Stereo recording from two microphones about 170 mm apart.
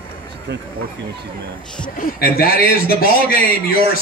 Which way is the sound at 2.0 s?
60° left (ahead or behind).